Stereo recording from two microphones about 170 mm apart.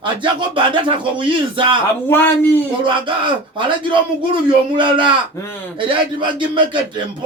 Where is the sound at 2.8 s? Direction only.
30° right (ahead or behind).